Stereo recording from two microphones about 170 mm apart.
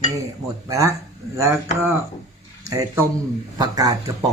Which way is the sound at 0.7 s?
20° right (ahead or behind).